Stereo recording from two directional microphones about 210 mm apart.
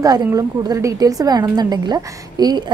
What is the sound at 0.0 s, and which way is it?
A woman's voice, 15° right (ahead or behind).